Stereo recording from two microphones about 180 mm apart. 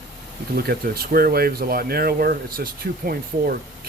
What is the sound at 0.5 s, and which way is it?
Speech, 60° right (ahead or behind).